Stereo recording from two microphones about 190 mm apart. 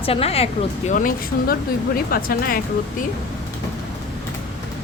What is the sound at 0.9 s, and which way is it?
Speech, 45° left (ahead or behind).